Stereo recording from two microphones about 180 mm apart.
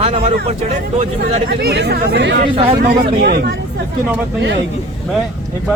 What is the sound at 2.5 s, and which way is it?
Speech, 30° right (ahead or behind).